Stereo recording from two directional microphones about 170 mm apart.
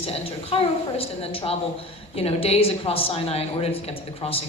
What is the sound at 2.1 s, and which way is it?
Speech, 35° left (ahead or behind).